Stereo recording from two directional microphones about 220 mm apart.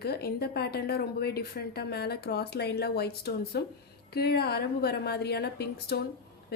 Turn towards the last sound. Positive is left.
turn(degrees=45)  # may be behind; listen again after turning